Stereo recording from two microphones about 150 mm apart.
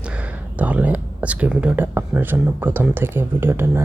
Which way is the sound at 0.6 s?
10° right (ahead or behind).